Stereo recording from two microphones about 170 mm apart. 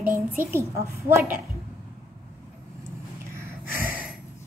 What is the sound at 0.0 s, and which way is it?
Speech, 15° right (ahead or behind).